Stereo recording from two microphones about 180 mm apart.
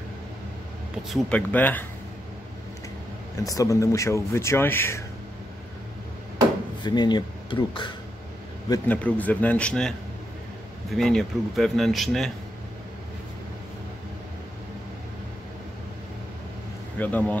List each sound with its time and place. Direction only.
1.1 s speech: 10° left (ahead or behind)
3.3 s speech: 20° left (ahead or behind)
6.8 s speech: 25° left (ahead or behind)
8.8 s speech: 10° left (ahead or behind)
17.0 s speech: 10° left (ahead or behind)